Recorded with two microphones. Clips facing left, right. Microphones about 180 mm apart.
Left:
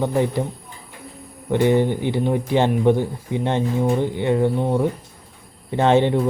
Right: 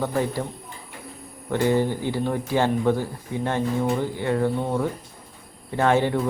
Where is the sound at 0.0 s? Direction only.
20° left (ahead or behind).